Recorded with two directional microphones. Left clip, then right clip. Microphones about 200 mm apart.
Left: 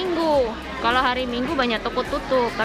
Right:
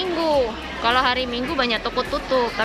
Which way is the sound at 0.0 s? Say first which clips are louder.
Even; 5° left (ahead or behind).